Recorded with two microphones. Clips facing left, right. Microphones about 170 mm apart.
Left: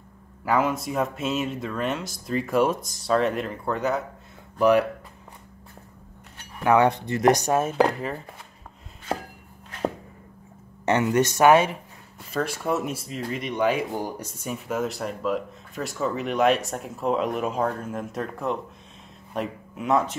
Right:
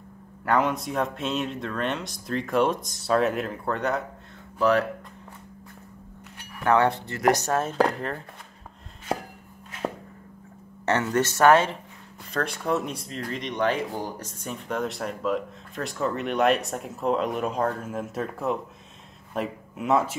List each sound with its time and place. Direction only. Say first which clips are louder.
0.5 s speech: even; 5° left (ahead or behind)
4.6 s speech: left 3 dB; 15° left (ahead or behind)
6.6 s speech: left 2 dB; 15° left (ahead or behind)
10.9 s speech: left 3 dB; 15° left (ahead or behind); by 20.2 s centre (ahead or behind)